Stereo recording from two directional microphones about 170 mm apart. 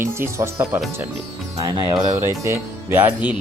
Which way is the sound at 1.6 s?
25° right (ahead or behind).